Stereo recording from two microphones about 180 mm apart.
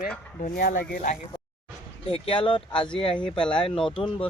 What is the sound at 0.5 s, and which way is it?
Speech, 55° left (ahead or behind).